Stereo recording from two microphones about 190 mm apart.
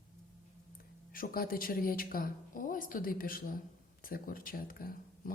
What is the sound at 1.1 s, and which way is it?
A woman's voice, 50° left (ahead or behind).